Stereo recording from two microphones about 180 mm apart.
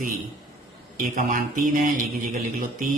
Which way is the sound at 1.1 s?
45° right (ahead or behind).